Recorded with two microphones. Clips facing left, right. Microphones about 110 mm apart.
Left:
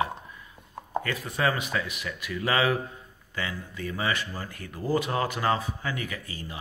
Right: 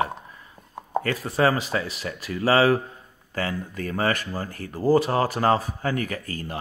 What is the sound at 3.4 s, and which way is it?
Speech, 45° right (ahead or behind).